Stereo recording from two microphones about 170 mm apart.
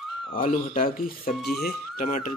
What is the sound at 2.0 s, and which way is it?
Speech, 50° left (ahead or behind).